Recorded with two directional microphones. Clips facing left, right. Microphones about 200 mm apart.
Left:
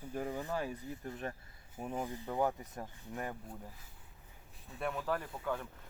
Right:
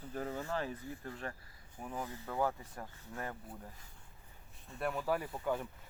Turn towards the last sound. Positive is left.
turn(degrees=-10)  # may be behind; listen again after turning